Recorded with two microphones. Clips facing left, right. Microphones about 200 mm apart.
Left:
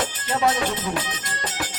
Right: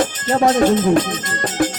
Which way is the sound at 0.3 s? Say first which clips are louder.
Right 9 dB; 50° right (ahead or behind).